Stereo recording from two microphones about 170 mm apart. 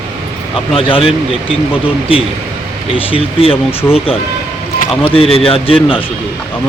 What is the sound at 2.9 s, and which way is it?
Speech, 35° left (ahead or behind).